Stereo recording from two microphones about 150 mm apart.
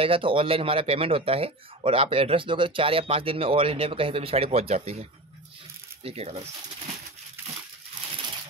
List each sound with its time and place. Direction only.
0.0 s speech: 35° right (ahead or behind)
6.0 s speech: 45° right (ahead or behind)